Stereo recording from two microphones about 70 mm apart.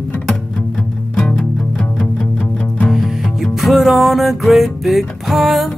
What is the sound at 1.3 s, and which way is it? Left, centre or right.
Music, centre.